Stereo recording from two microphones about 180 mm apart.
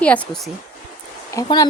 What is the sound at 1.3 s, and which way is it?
Speech, 20° left (ahead or behind).